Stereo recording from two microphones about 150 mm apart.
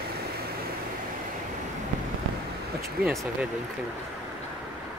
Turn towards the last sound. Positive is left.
turn(degrees=-85)